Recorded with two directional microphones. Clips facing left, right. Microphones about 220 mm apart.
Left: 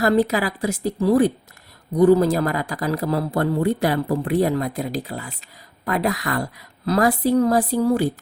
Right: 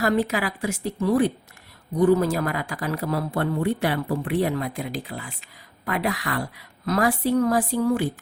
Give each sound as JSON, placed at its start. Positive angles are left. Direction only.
{"t": 0.0, "sound": "speech", "side_deg": 40}